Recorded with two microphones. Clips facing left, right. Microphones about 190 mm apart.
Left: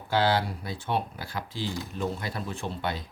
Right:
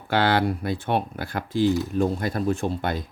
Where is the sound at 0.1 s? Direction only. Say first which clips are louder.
Right 4 dB; 60° right (ahead or behind).